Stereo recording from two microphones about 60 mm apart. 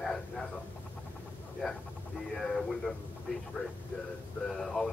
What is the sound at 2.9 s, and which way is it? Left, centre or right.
Speech, left.